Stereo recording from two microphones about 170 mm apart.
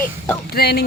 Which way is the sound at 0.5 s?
70° left (ahead or behind).